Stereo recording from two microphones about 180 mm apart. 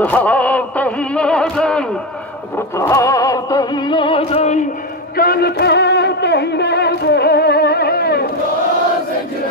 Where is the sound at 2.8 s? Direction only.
15° left (ahead or behind); by 8.3 s 60° left (ahead or behind).